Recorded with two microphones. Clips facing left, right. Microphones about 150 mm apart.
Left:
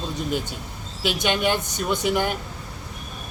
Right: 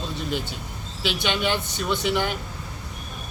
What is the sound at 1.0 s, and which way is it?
Speech, 45° left (ahead or behind).